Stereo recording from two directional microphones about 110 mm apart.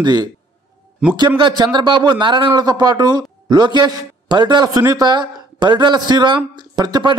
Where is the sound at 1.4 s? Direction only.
45° right (ahead or behind).